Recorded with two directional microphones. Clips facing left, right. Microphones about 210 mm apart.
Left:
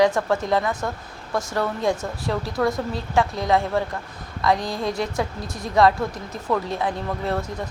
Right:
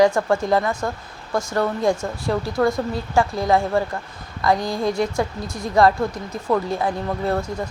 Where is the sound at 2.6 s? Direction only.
5° right (ahead or behind).